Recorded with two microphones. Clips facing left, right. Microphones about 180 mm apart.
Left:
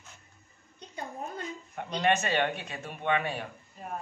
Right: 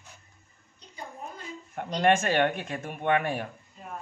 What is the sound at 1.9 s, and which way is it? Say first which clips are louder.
Speech: right 4 dB; 50° right (ahead or behind).